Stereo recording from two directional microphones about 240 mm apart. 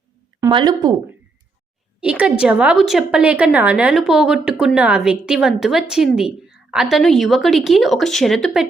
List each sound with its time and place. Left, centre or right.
0.3 s speech: centre
2.0 s a woman's voice: centre